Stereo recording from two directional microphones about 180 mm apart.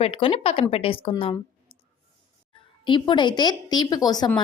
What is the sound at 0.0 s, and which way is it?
Speech, 30° left (ahead or behind).